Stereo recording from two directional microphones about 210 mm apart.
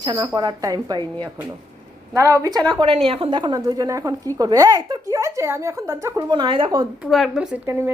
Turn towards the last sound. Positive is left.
turn(degrees=-5)  # may be behind; listen again after turning